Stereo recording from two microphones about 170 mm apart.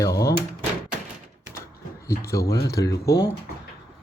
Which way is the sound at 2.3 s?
20° left (ahead or behind).